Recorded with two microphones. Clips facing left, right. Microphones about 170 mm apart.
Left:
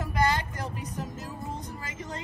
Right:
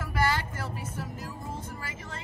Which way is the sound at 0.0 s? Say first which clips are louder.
Left 2 dB; 20° left (ahead or behind).